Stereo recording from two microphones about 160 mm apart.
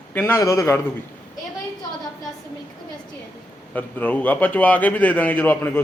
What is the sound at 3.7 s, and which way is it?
A man's voice, 10° left (ahead or behind).